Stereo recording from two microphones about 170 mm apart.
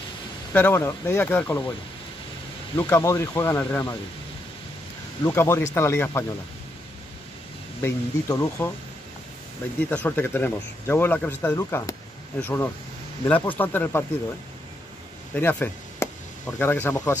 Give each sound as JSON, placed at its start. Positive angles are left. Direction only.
{"t": 0.5, "sound": "speech", "side_deg": 10}
{"t": 2.8, "sound": "speech", "side_deg": 15}
{"t": 5.2, "sound": "speech", "side_deg": 15}
{"t": 7.8, "sound": "speech", "side_deg": 20}
{"t": 9.8, "sound": "speech", "side_deg": 10}
{"t": 15.3, "sound": "speech", "side_deg": 10}